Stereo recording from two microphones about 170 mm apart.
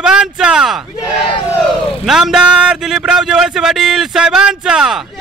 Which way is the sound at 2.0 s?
5° right (ahead or behind).